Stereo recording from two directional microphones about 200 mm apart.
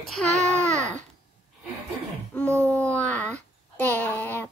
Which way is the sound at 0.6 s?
35° right (ahead or behind).